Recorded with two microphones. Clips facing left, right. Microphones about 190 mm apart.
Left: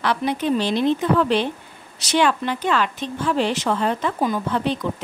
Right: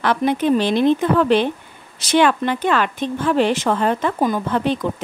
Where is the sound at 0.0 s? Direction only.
50° right (ahead or behind).